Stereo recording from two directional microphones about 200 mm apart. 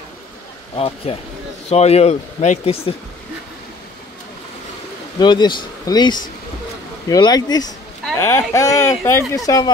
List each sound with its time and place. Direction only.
0.7 s speech: 30° left (ahead or behind)
5.2 s speech: 20° left (ahead or behind)